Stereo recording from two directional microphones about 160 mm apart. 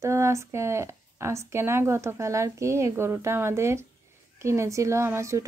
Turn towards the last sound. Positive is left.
turn(degrees=-15)  # may be behind; listen again after turning